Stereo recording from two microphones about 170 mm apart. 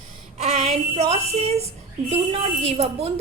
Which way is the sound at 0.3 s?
35° right (ahead or behind).